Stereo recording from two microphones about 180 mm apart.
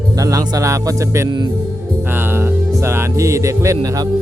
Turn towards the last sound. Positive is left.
turn(degrees=-20)  # may be behind; listen again after turning